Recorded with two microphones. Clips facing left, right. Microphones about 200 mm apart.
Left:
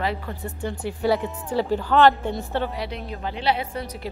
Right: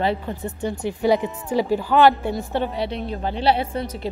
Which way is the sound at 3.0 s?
35° right (ahead or behind).